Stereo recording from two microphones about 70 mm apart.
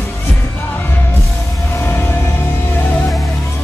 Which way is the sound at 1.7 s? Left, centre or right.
Left.